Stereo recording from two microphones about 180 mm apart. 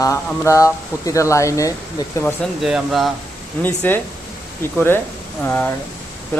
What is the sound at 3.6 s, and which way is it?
Speech, 10° left (ahead or behind).